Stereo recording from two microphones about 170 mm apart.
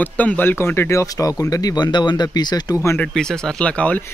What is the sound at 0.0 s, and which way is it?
Speech, 10° left (ahead or behind).